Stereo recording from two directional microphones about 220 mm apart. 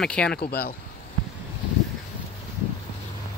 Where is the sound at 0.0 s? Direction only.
5° left (ahead or behind).